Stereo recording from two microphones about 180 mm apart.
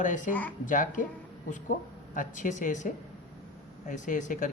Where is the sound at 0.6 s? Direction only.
45° left (ahead or behind).